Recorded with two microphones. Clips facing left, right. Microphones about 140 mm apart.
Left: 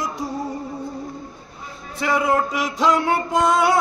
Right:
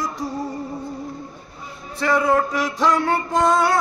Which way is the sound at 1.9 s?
15° left (ahead or behind).